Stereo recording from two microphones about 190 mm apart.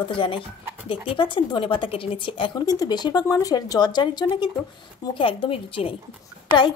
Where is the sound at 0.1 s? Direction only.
25° left (ahead or behind).